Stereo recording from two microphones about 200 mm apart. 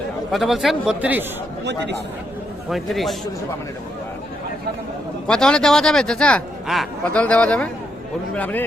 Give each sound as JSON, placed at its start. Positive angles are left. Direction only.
{"t": 0.3, "sound": "speech", "side_deg": 0}
{"t": 1.6, "sound": "speech", "side_deg": -60}
{"t": 2.6, "sound": "speech", "side_deg": 0}
{"t": 5.3, "sound": "speech", "side_deg": 5}